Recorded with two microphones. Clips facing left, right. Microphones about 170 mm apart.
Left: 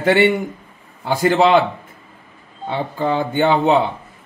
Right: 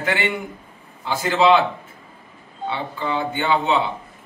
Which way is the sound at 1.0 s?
50° left (ahead or behind).